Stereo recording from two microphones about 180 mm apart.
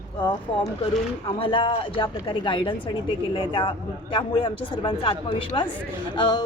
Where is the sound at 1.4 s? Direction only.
30° left (ahead or behind).